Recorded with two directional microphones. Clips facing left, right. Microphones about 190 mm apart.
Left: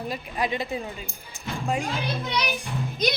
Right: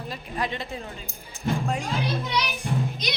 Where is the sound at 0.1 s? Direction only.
10° left (ahead or behind).